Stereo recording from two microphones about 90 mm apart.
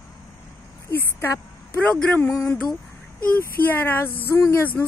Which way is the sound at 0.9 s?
25° left (ahead or behind).